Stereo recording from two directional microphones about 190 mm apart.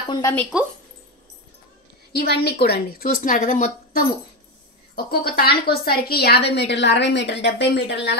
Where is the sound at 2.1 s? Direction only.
55° left (ahead or behind).